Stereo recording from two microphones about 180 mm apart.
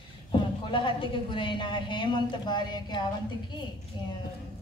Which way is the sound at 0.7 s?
25° left (ahead or behind).